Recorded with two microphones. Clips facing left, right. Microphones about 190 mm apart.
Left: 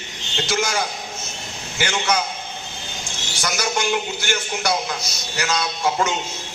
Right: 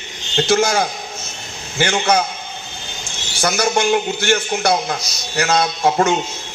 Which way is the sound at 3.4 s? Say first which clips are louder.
Right 6 dB; 55° right (ahead or behind).